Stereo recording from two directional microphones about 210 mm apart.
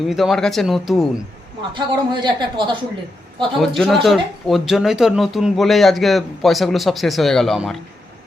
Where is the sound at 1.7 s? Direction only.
20° right (ahead or behind).